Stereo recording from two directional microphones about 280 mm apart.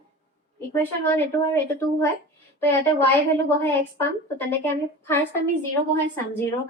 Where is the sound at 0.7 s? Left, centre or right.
Centre.